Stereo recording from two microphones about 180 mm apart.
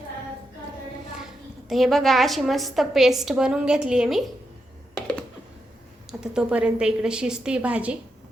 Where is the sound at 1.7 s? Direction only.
Centre (ahead or behind).